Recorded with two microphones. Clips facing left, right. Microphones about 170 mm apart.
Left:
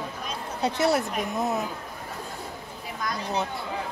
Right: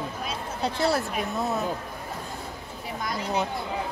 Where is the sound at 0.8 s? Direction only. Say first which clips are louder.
Left 1 dB; 20° left (ahead or behind).